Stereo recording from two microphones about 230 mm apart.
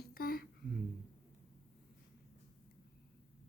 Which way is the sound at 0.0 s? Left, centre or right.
Left.